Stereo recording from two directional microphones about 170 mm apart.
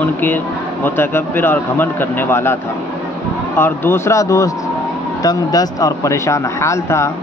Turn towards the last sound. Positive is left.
turn(degrees=15)  # may be behind; listen again after turning